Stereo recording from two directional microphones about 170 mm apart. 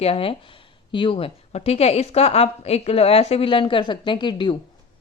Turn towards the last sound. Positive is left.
turn(degrees=25)  # may be behind; listen again after turning